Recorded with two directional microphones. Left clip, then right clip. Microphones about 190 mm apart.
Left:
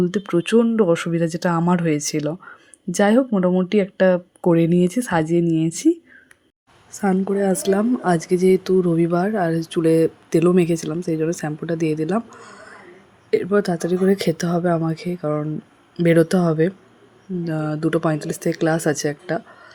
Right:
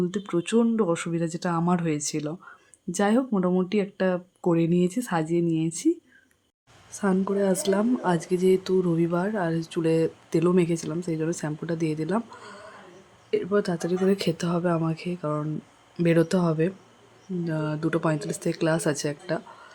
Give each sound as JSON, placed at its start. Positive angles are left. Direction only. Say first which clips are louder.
{"t": 0.0, "sound": "speech", "louder": "left 7 dB", "side_deg": 25}
{"t": 6.9, "sound": "speech", "louder": "left 5 dB", "side_deg": 10}